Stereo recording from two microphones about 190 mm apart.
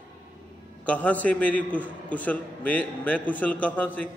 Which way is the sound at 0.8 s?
5° left (ahead or behind).